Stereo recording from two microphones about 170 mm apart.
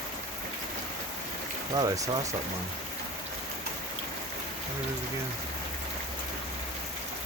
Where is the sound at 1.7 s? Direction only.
20° right (ahead or behind).